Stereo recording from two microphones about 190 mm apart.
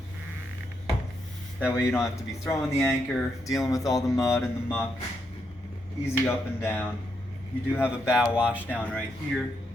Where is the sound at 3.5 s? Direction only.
15° left (ahead or behind).